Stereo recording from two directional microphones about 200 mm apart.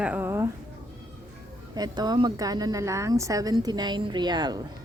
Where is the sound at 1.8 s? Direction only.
20° right (ahead or behind).